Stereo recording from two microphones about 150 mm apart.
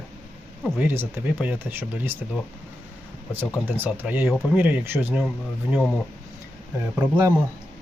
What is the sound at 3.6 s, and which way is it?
Speech, 10° right (ahead or behind).